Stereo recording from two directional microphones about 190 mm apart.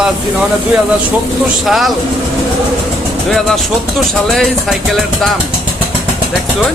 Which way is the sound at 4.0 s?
Centre (ahead or behind).